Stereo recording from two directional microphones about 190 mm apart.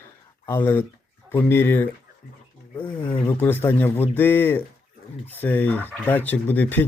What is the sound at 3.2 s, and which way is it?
Speech, 10° left (ahead or behind).